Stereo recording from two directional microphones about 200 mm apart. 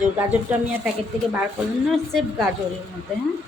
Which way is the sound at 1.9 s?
Centre (ahead or behind).